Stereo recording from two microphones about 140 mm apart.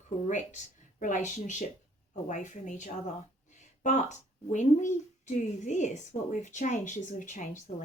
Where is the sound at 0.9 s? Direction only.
65° left (ahead or behind).